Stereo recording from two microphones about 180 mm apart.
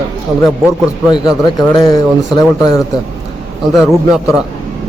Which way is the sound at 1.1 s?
20° left (ahead or behind).